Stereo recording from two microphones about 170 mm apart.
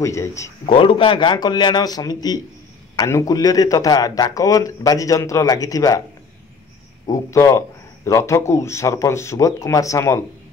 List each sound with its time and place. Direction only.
0.0 s a man's voice: 15° left (ahead or behind)
0.7 s a man's voice: 30° left (ahead or behind)
7.1 s a man's voice: 20° left (ahead or behind)